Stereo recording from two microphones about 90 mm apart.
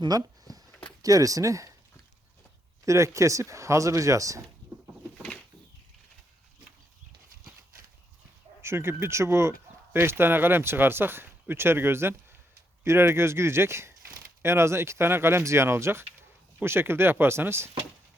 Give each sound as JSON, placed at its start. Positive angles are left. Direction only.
{"t": 0.0, "sound": "a sound", "side_deg": -50}
{"t": 1.0, "sound": "speech", "side_deg": -40}
{"t": 2.8, "sound": "speech", "side_deg": -35}
{"t": 8.6, "sound": "speech", "side_deg": -30}